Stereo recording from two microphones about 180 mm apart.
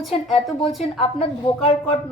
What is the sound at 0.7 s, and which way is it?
Speech, centre (ahead or behind).